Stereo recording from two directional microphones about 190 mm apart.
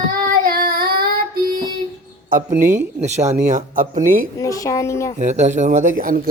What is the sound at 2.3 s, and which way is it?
Speech, 45° right (ahead or behind).